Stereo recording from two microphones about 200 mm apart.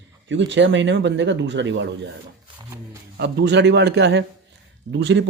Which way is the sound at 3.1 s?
55° right (ahead or behind).